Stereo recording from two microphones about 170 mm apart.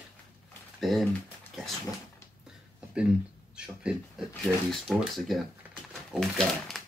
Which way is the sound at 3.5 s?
5° right (ahead or behind).